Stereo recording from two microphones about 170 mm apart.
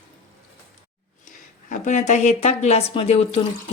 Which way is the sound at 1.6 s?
45° left (ahead or behind).